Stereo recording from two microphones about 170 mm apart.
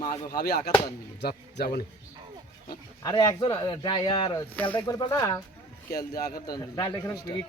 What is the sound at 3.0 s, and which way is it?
Speech, 20° left (ahead or behind).